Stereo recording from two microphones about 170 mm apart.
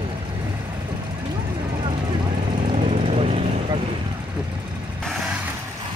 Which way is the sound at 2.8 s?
35° right (ahead or behind).